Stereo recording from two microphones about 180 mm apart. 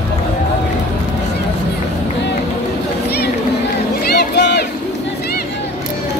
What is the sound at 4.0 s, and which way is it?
Crowd, 65° left (ahead or behind).